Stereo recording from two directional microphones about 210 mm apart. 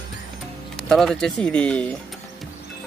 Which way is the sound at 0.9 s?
Centre (ahead or behind).